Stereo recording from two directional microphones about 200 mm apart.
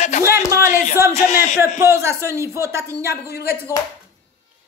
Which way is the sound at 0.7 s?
50° left (ahead or behind).